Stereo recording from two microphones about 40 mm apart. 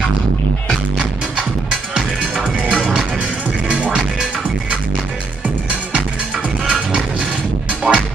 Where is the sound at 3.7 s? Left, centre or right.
Right.